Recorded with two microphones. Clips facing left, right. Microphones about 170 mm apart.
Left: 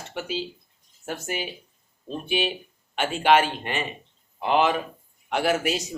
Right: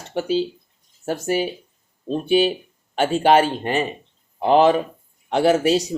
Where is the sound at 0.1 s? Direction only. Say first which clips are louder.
Right 10 dB; 35° right (ahead or behind).